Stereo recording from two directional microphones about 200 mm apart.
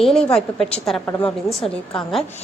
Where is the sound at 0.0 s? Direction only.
5° left (ahead or behind).